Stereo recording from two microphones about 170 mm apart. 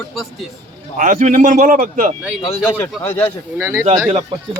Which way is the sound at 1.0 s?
50° right (ahead or behind).